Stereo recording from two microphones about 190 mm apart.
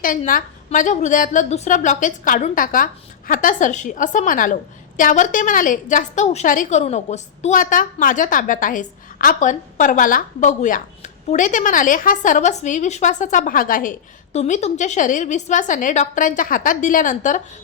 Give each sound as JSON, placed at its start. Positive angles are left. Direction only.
{"t": 0.0, "sound": "a woman's voice", "side_deg": 45}
{"t": 14.3, "sound": "a woman's voice", "side_deg": 35}